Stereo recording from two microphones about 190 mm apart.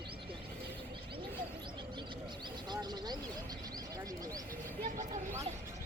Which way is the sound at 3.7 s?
20° right (ahead or behind).